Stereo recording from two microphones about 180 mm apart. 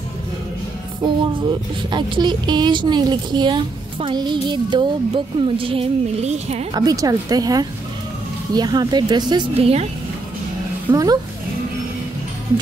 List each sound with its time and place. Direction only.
1.0 s speech: 25° right (ahead or behind)
6.7 s speech: 20° right (ahead or behind)
10.9 s speech: 20° right (ahead or behind)